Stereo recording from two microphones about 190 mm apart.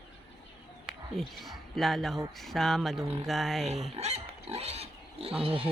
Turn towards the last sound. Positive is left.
turn(degrees=-30)  # may be behind; listen again after turning